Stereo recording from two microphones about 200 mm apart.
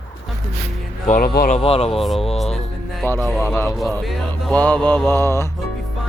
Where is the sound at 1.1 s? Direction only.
45° left (ahead or behind).